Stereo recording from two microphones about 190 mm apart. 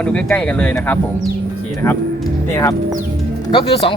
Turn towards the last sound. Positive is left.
turn(degrees=30)  # may be behind; listen again after turning